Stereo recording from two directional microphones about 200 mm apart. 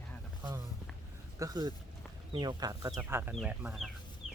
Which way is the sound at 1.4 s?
20° right (ahead or behind).